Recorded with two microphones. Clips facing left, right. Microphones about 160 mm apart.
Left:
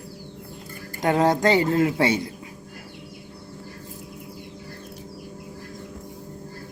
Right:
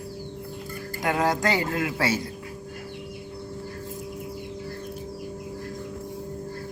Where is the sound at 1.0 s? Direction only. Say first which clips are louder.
Left 5 dB; 20° left (ahead or behind).